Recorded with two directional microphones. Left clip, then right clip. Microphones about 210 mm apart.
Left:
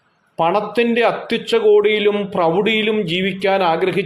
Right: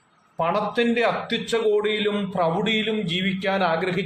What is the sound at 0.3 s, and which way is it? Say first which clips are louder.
A man's voice: left 6 dB; 40° left (ahead or behind).